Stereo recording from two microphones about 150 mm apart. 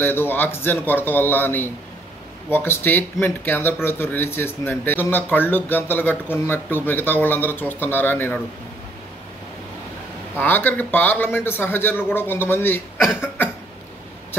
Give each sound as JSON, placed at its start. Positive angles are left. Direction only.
{"t": 0.0, "sound": "speech", "side_deg": 15}
{"t": 10.3, "sound": "speech", "side_deg": 10}